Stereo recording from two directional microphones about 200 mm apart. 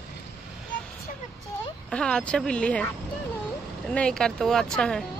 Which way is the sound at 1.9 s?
5° left (ahead or behind).